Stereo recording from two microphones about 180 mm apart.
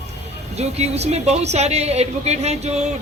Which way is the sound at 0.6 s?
35° right (ahead or behind).